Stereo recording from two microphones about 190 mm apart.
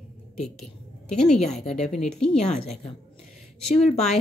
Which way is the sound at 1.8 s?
35° left (ahead or behind).